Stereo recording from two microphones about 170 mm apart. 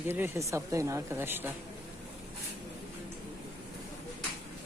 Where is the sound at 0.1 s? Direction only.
15° right (ahead or behind).